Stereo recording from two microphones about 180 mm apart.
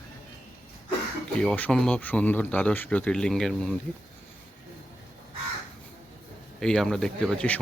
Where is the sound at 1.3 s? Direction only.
5° left (ahead or behind).